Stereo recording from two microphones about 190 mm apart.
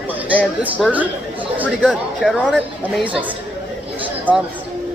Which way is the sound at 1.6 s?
Centre (ahead or behind).